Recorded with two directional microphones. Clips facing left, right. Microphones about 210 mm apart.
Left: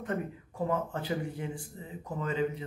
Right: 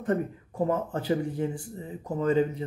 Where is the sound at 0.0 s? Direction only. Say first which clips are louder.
Right 7 dB; 40° right (ahead or behind).